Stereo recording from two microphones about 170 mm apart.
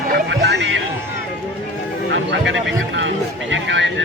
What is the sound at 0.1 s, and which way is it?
Music, 85° right.